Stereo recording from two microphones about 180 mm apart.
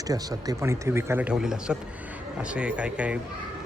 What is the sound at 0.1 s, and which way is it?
Speech, 20° right (ahead or behind).